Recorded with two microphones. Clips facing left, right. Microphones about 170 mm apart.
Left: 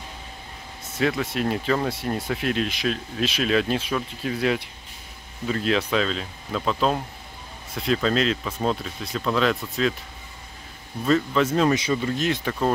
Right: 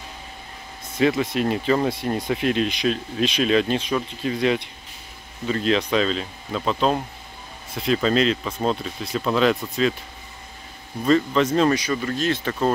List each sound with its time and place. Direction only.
0.9 s speech: centre (ahead or behind)
11.1 s speech: 5° left (ahead or behind)
11.7 s speech: 20° left (ahead or behind)